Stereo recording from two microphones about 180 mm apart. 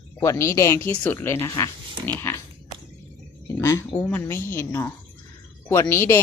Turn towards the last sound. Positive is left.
turn(degrees=15)  # may be behind; listen again after turning